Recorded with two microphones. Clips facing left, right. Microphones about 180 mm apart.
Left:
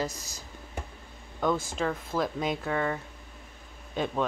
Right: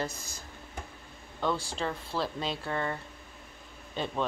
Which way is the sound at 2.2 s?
15° left (ahead or behind).